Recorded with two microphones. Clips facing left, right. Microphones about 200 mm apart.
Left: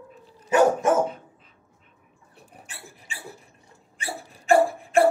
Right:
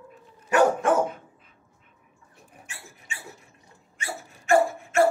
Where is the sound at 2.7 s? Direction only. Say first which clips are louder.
Even; 35° left (ahead or behind).